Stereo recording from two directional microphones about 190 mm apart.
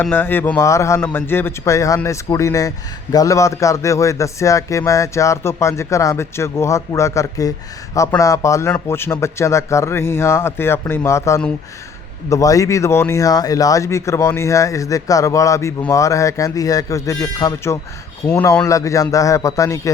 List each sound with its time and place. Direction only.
0.0 s a man's voice: 10° left (ahead or behind)